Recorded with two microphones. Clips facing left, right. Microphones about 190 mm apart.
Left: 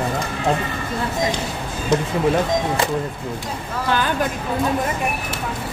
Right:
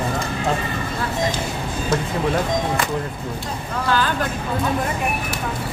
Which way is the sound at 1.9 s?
20° left (ahead or behind).